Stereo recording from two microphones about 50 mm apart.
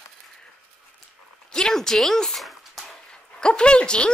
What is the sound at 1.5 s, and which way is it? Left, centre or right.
Dog, centre.